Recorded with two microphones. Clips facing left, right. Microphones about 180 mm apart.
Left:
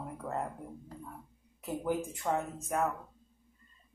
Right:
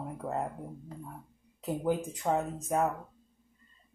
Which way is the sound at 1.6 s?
20° right (ahead or behind).